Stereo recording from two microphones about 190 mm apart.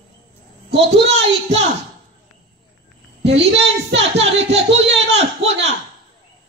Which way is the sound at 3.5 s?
65° right (ahead or behind).